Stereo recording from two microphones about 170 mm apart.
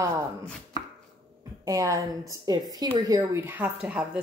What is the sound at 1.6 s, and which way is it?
A woman's voice, 20° right (ahead or behind).